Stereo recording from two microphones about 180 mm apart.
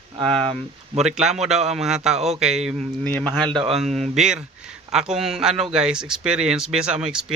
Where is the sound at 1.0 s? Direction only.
Centre (ahead or behind).